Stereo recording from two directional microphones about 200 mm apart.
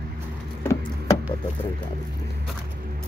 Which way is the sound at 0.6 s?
10° left (ahead or behind).